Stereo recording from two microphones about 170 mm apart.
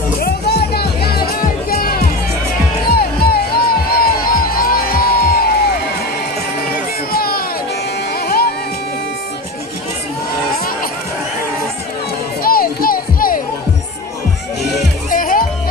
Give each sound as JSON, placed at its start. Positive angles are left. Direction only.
{"t": 0.2, "sound": "music", "side_deg": 70}
{"t": 7.1, "sound": "a sound", "side_deg": 60}
{"t": 8.1, "sound": "music", "side_deg": 65}
{"t": 12.4, "sound": "music", "side_deg": 60}
{"t": 15.0, "sound": "music", "side_deg": 55}